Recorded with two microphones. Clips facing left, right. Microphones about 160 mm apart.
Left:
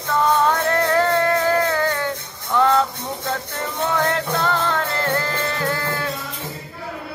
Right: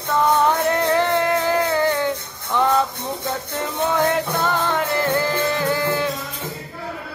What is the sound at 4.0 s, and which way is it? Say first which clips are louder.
Music: right 2 dB; 15° right (ahead or behind).